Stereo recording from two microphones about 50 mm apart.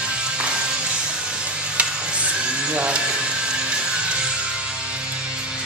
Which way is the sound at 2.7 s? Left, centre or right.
Right.